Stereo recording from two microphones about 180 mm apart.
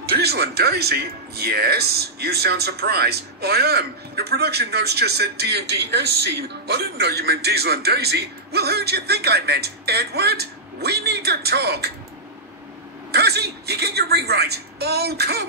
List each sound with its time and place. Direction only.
0.1 s speech: 65° right (ahead or behind)
13.1 s speech: 65° right (ahead or behind)